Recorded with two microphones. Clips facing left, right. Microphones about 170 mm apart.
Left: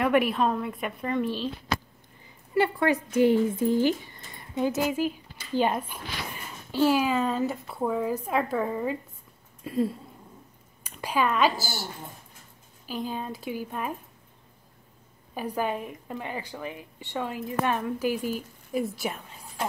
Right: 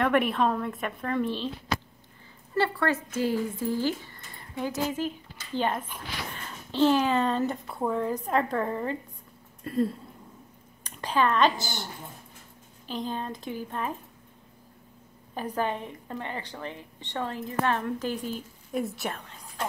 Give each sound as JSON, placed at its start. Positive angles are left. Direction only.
{"t": 0.0, "sound": "a woman's voice", "side_deg": 5}
{"t": 2.5, "sound": "speech", "side_deg": 15}
{"t": 15.3, "sound": "a woman's voice", "side_deg": 10}